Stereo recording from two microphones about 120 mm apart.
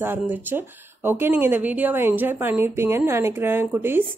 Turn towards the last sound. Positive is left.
turn(degrees=-15)  # may be behind; listen again after turning